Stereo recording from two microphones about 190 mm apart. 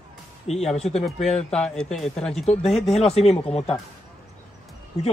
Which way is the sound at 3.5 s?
30° left (ahead or behind).